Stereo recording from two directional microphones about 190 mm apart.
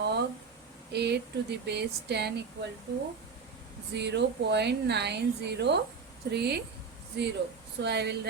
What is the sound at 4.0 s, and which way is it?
Speech, 60° right (ahead or behind).